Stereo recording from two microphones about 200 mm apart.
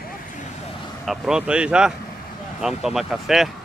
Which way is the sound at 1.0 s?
Centre (ahead or behind).